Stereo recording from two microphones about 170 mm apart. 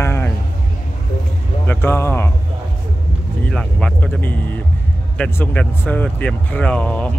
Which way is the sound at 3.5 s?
5° left (ahead or behind).